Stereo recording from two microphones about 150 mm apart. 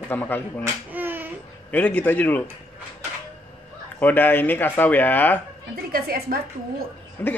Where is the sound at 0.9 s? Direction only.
15° right (ahead or behind).